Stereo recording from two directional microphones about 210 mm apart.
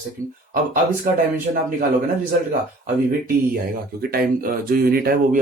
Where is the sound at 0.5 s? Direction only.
40° right (ahead or behind).